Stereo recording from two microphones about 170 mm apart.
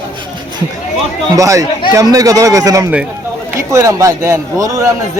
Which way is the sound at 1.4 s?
20° right (ahead or behind).